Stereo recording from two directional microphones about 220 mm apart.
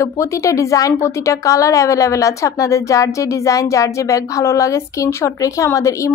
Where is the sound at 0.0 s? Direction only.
15° left (ahead or behind).